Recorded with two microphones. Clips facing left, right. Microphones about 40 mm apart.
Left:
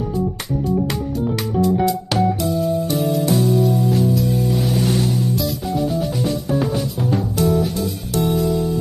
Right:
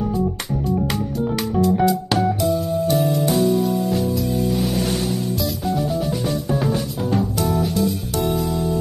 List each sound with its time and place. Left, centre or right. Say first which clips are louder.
1.5 s music: even; centre